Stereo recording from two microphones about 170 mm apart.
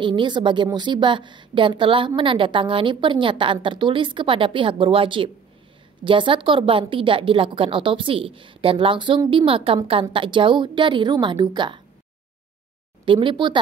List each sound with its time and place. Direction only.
0.0 s a woman's voice: 30° right (ahead or behind)
13.0 s a woman's voice: 30° right (ahead or behind)